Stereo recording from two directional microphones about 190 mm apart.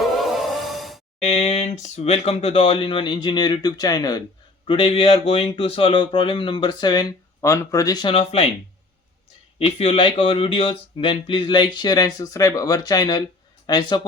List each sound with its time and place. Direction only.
0.2 s music: centre (ahead or behind)
1.2 s speech: 35° left (ahead or behind)
9.6 s speech: 35° left (ahead or behind)